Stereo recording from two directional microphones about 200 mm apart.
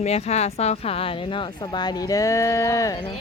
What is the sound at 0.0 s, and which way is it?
Speech, 30° left (ahead or behind).